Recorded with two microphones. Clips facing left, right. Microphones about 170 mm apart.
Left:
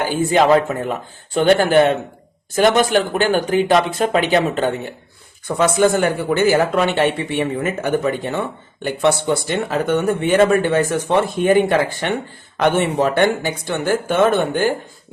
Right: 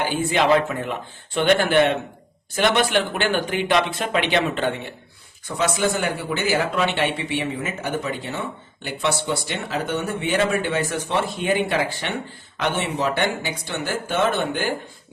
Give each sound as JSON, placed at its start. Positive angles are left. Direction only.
{"t": 0.0, "sound": "speech", "side_deg": 40}
{"t": 5.5, "sound": "speech", "side_deg": 50}